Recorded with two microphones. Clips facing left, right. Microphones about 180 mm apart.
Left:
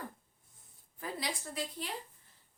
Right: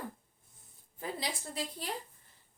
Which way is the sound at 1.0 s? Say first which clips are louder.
Right 1 dB; 30° right (ahead or behind).